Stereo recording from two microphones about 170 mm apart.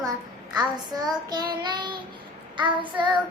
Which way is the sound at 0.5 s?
25° right (ahead or behind).